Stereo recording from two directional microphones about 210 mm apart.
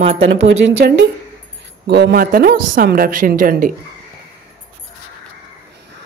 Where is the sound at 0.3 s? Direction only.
60° right (ahead or behind); by 3.7 s 40° right (ahead or behind).